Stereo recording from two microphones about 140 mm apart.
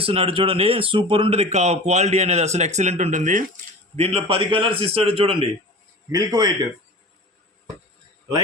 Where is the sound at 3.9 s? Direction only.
45° right (ahead or behind).